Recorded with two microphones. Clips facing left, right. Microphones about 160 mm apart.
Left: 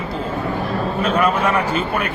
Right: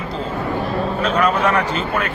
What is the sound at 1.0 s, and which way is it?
Speech, 10° left (ahead or behind).